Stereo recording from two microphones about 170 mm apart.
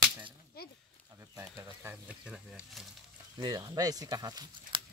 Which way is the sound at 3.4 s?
25° right (ahead or behind).